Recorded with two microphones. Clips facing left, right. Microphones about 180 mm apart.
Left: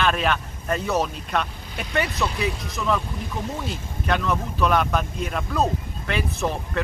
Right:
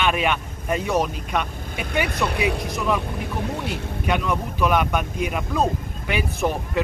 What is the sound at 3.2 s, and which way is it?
Speech, 65° right (ahead or behind).